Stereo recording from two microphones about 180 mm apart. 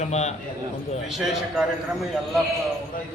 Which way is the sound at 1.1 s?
Centre (ahead or behind).